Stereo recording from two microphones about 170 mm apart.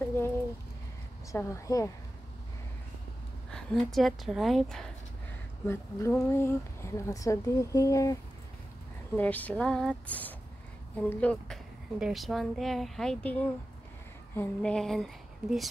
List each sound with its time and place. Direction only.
0.0 s a sound: 15° left (ahead or behind)
1.3 s a woman's voice: 20° left (ahead or behind)
3.5 s speech: centre (ahead or behind)
5.7 s speech: 15° left (ahead or behind)